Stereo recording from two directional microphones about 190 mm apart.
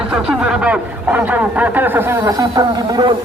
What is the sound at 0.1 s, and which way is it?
Speech, 5° right (ahead or behind).